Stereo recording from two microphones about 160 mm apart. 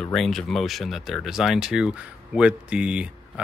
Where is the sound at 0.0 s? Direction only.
Centre (ahead or behind).